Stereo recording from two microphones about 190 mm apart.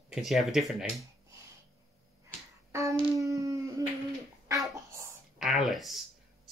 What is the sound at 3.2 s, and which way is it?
Howl, 15° right (ahead or behind).